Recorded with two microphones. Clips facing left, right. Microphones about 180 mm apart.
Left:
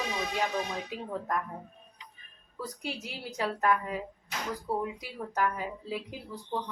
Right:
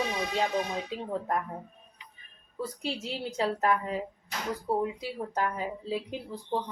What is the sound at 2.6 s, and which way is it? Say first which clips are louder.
Speech: right 4 dB; 25° right (ahead or behind).